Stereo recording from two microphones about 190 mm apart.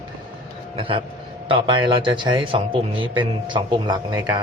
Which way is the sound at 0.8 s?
25° right (ahead or behind).